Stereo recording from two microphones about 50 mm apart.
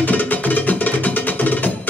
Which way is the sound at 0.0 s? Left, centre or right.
Left.